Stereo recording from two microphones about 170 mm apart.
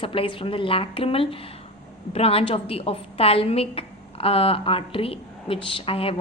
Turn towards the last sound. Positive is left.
turn(degrees=35)  # may be behind; listen again after turning